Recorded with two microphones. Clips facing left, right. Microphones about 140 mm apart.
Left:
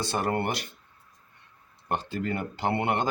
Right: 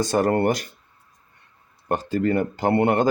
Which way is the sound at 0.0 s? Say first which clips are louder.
Right 8 dB; 45° right (ahead or behind).